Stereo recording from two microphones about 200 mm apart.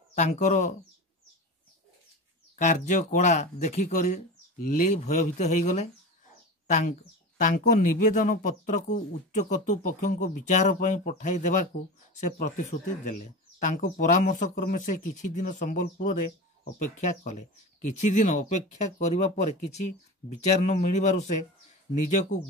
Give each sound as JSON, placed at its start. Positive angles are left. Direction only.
{"t": 0.1, "sound": "speech", "side_deg": 35}
{"t": 2.5, "sound": "speech", "side_deg": 35}